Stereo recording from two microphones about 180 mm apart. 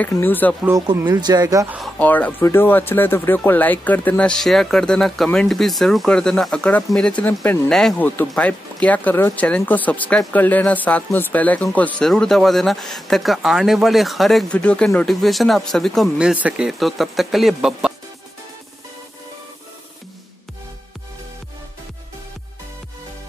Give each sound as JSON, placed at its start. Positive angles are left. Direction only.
{"t": 0.0, "sound": "speech", "side_deg": 10}
{"t": 0.7, "sound": "speech", "side_deg": -20}
{"t": 1.8, "sound": "speech", "side_deg": 10}